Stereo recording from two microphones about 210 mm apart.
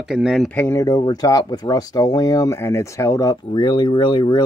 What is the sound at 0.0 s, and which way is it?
Speech, centre (ahead or behind).